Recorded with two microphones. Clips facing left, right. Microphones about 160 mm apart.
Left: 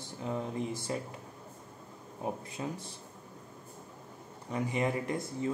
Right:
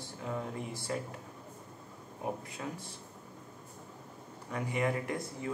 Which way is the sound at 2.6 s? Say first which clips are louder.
Left 5 dB; 20° left (ahead or behind).